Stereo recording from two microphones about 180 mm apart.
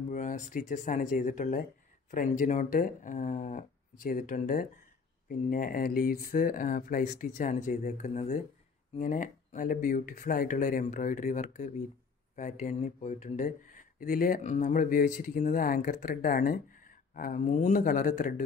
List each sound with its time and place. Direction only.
0.1 s speech: 45° left (ahead or behind)